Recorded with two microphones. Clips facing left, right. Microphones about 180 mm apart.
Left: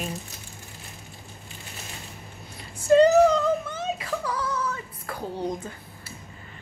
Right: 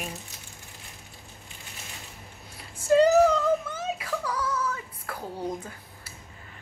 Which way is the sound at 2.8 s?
10° right (ahead or behind).